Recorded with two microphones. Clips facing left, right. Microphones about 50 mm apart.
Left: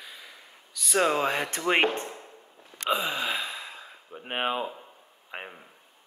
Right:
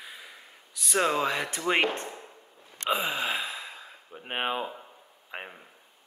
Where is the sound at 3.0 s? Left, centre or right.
Centre.